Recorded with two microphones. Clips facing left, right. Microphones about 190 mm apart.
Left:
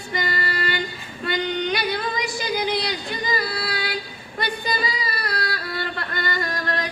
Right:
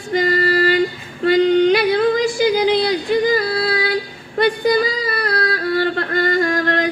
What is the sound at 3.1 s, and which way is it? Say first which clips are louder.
Yodeling: right 10 dB; 65° right (ahead or behind).